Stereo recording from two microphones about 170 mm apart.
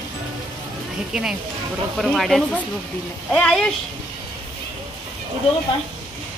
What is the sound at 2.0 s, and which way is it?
Speech, centre (ahead or behind).